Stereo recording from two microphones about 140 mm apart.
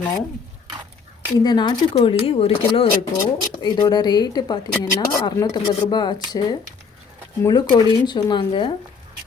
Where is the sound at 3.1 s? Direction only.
30° left (ahead or behind).